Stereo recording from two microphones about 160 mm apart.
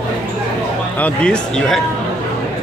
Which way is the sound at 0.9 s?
10° left (ahead or behind).